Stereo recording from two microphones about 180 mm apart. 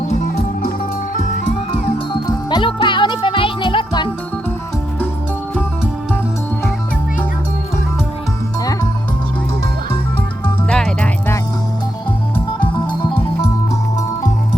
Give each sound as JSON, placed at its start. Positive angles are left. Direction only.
{"t": 0.1, "sound": "music", "side_deg": 45}
{"t": 2.2, "sound": "music", "side_deg": 25}
{"t": 10.4, "sound": "music", "side_deg": 5}